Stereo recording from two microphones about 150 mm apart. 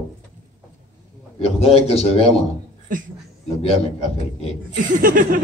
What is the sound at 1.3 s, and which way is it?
A man's voice, 40° left (ahead or behind).